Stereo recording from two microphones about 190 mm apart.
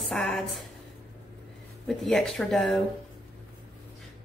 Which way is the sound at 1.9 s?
Centre (ahead or behind).